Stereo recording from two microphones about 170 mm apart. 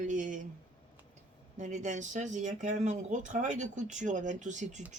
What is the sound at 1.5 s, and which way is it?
Speech, 45° right (ahead or behind).